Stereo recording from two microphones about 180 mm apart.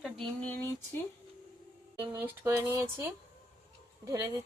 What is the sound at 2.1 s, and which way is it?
A woman's voice, 15° right (ahead or behind).